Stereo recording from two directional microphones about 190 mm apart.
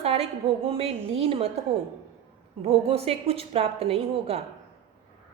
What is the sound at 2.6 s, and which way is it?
A woman's voice, 30° right (ahead or behind).